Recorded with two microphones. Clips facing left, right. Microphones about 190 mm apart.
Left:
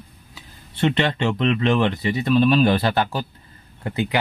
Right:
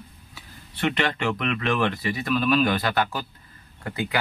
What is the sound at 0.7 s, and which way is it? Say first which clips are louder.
Speech: left 4 dB; 25° left (ahead or behind).